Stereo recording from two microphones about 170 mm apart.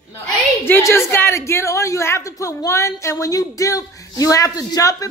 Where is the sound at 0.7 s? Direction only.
15° left (ahead or behind).